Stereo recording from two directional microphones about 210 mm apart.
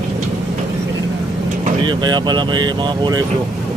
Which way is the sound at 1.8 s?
20° right (ahead or behind).